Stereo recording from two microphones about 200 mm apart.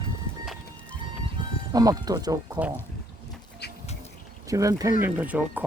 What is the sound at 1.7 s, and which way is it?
Speech, 20° right (ahead or behind).